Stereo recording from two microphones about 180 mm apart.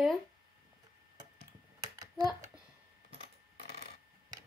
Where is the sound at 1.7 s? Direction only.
20° right (ahead or behind).